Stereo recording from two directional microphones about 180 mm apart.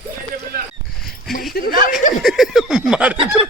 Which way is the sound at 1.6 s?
60° left (ahead or behind).